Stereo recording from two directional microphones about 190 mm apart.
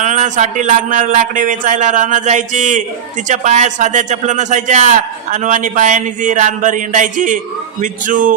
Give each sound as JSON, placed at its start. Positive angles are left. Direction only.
{"t": 0.0, "sound": "a man's voice", "side_deg": -40}